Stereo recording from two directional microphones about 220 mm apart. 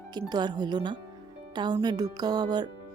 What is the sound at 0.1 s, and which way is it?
Speech, 20° right (ahead or behind).